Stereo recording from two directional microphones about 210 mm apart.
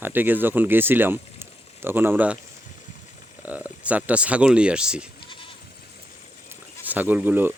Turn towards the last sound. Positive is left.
turn(degrees=-10)  # may be behind; listen again after turning